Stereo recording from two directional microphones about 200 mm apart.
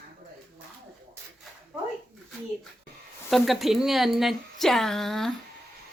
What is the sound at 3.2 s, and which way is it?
A woman's voice, centre (ahead or behind).